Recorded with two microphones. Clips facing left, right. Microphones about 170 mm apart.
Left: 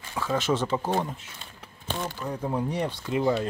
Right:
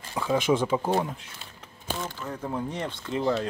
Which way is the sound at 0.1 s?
10° right (ahead or behind).